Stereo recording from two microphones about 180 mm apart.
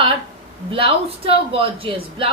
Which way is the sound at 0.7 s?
30° right (ahead or behind).